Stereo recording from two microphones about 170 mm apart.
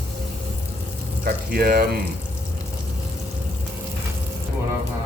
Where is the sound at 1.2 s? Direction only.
60° right (ahead or behind).